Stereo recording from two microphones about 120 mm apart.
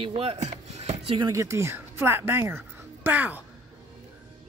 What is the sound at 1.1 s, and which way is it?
Speech, 30° right (ahead or behind).